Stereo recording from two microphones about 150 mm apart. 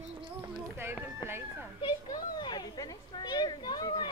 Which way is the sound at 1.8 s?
25° left (ahead or behind).